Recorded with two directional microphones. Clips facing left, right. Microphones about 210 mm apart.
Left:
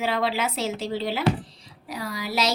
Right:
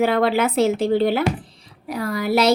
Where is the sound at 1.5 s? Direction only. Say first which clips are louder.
Right 7 dB; 55° right (ahead or behind).